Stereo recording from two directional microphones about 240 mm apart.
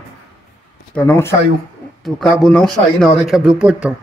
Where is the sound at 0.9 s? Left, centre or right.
Centre.